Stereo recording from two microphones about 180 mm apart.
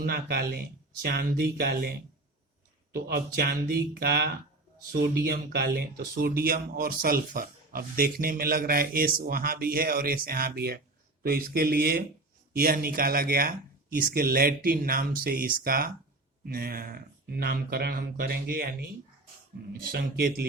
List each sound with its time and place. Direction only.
0.0 s speech: 60° right (ahead or behind)
2.9 s speech: 60° right (ahead or behind)